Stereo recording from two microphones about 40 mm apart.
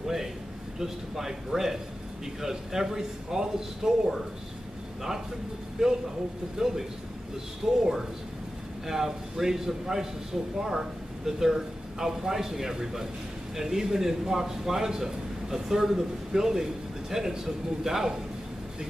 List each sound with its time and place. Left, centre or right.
0.0 s a sound: centre
0.7 s a man's voice: centre
5.8 s a man's voice: centre
8.8 s a man's voice: centre